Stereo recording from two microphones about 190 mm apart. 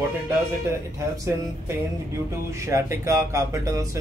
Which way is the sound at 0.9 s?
15° right (ahead or behind).